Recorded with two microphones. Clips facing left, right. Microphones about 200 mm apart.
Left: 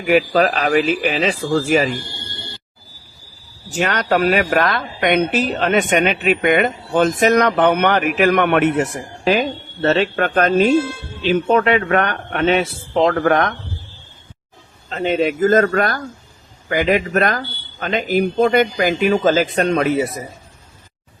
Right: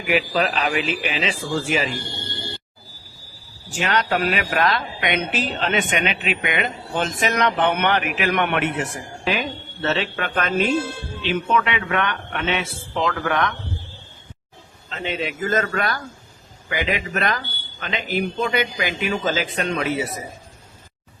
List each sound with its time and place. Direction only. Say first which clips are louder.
0.0 s speech: left 6 dB; 40° left (ahead or behind)
3.8 s a man's voice: left 4 dB; 50° left (ahead or behind)
14.8 s speech: left 9 dB; 45° left (ahead or behind)